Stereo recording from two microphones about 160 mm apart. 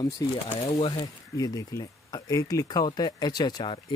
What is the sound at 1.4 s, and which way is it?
Speech, 20° left (ahead or behind).